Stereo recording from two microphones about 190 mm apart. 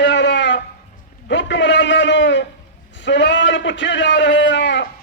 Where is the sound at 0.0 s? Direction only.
70° left (ahead or behind).